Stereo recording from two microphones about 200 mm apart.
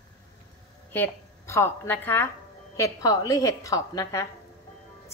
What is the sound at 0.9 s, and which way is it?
A woman's voice, 10° left (ahead or behind).